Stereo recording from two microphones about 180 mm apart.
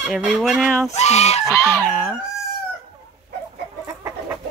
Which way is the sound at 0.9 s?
35° left (ahead or behind).